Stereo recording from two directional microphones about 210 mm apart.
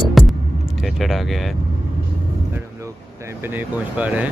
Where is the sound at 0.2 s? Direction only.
Centre (ahead or behind).